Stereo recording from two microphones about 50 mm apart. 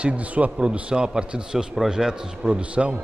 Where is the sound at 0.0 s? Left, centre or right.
Right.